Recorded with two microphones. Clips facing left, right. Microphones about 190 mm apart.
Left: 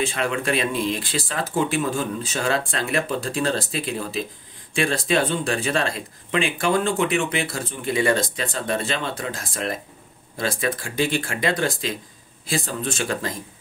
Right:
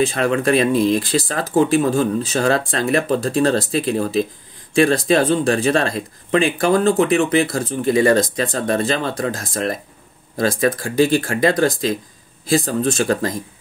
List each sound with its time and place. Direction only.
0.0 s speech: 40° right (ahead or behind)